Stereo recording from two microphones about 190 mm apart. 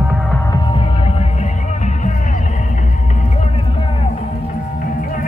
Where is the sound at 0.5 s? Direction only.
30° left (ahead or behind).